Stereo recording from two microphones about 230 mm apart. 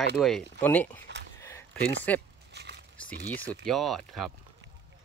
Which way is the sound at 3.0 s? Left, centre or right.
Centre.